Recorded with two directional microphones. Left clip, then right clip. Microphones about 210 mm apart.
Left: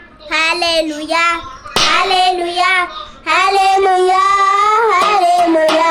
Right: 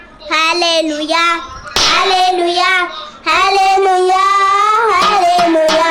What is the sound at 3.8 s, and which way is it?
Child singing, 35° right (ahead or behind).